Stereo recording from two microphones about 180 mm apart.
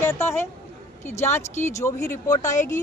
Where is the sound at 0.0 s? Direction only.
15° left (ahead or behind).